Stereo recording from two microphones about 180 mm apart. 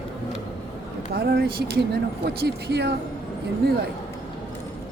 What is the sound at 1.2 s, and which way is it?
Speech, 60° right (ahead or behind).